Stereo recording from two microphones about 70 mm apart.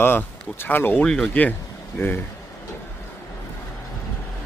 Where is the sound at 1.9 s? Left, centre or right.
Left.